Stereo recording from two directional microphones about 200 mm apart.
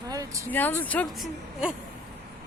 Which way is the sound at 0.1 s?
15° right (ahead or behind).